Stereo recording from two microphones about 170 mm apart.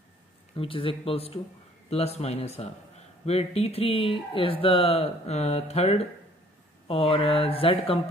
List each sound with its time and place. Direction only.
0.6 s speech: 30° left (ahead or behind)